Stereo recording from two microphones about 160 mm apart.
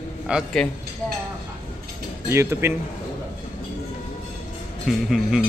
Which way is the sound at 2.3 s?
15° right (ahead or behind).